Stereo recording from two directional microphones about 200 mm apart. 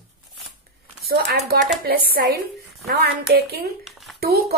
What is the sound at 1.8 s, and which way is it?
A woman's voice, 50° right (ahead or behind).